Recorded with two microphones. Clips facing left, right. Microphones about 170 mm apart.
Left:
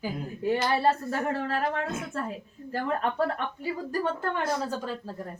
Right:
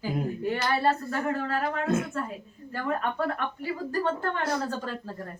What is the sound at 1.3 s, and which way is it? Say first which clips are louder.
Speech: even; 30° left (ahead or behind).